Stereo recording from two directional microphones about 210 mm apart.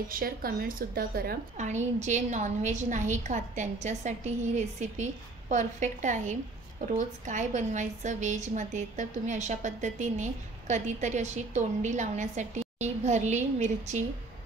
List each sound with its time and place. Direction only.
0.1 s a woman's voice: 45° right (ahead or behind)